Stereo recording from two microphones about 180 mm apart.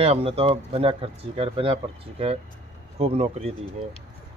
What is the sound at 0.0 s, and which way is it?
Speech, 35° right (ahead or behind).